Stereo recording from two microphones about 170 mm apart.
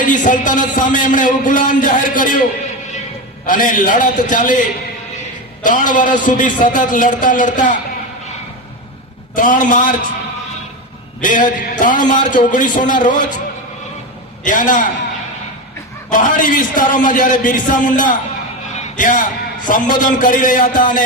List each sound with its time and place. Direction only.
0.0 s a man's voice: 50° left (ahead or behind)
3.4 s a man's voice: 50° left (ahead or behind)
5.6 s a man's voice: 50° left (ahead or behind)
9.3 s a man's voice: 50° left (ahead or behind)
11.2 s a man's voice: 50° left (ahead or behind)
14.4 s a man's voice: 50° left (ahead or behind)
16.0 s a man's voice: 50° left (ahead or behind)